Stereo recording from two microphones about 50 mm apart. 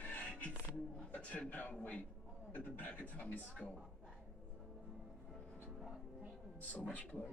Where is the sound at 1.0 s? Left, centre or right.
Left.